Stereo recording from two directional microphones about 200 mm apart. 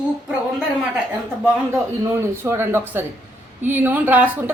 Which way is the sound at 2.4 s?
10° right (ahead or behind).